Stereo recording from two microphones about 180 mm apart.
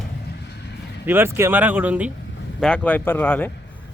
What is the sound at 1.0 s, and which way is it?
Speech, 10° right (ahead or behind).